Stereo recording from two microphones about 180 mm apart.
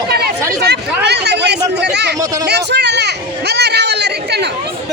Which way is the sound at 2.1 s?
20° right (ahead or behind).